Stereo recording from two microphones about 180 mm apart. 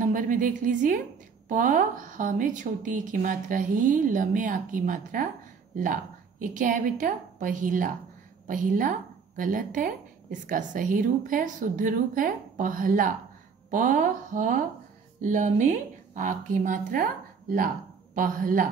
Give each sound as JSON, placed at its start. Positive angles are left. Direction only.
{"t": 0.0, "sound": "a woman's voice", "side_deg": -50}
{"t": 6.4, "sound": "a woman's voice", "side_deg": -45}